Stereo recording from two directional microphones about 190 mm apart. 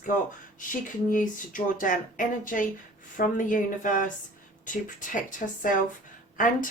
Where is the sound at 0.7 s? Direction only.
45° left (ahead or behind).